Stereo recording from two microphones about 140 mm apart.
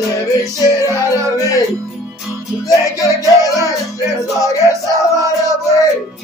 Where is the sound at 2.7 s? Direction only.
25° left (ahead or behind).